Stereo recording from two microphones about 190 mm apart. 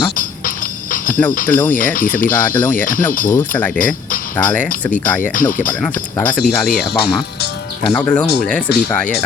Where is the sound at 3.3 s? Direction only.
10° left (ahead or behind).